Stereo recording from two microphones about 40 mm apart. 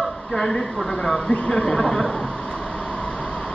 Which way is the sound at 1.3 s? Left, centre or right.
Left.